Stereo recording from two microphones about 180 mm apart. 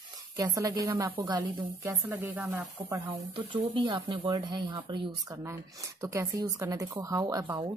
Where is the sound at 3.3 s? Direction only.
30° right (ahead or behind).